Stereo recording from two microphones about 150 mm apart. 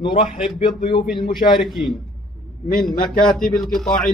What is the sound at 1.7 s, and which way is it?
Speech, centre (ahead or behind).